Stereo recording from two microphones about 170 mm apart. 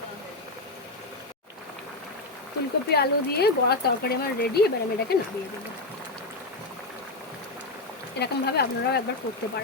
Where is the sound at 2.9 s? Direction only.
70° left (ahead or behind).